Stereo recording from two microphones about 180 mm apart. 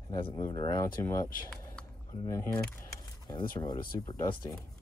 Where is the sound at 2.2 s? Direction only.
15° left (ahead or behind).